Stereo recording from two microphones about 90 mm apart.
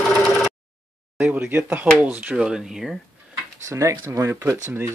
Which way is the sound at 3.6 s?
35° right (ahead or behind).